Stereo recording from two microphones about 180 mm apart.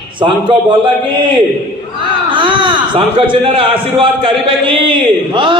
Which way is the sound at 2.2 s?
25° right (ahead or behind).